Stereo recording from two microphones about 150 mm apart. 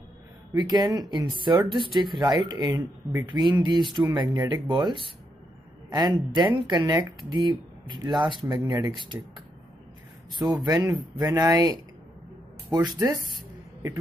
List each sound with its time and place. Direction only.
0.6 s speech: 30° right (ahead or behind)
10.3 s speech: 25° right (ahead or behind)